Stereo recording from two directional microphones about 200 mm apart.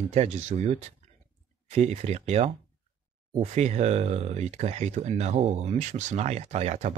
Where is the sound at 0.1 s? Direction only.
35° right (ahead or behind).